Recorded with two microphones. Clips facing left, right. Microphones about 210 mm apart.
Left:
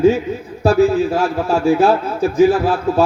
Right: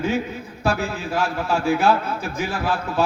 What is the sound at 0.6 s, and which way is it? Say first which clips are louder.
A man's voice: left 12 dB; 40° left (ahead or behind).